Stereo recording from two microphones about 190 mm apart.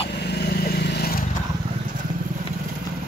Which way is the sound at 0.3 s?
55° left (ahead or behind).